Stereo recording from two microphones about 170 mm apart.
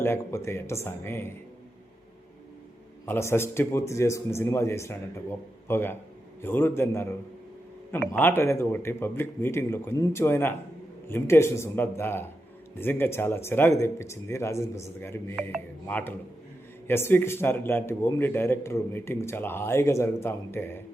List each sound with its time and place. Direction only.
0.0 s speech: 15° left (ahead or behind)
3.1 s speech: 15° left (ahead or behind)
8.1 s speech: 10° left (ahead or behind)